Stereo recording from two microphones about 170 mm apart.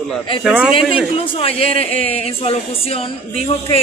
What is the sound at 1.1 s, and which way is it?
A woman's voice, 35° left (ahead or behind).